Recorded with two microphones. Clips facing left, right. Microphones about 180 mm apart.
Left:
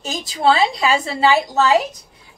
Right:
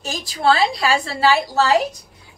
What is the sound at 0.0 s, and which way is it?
A woman's voice, 20° left (ahead or behind).